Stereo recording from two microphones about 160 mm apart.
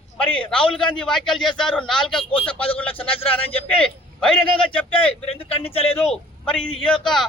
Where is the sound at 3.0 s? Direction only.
35° left (ahead or behind).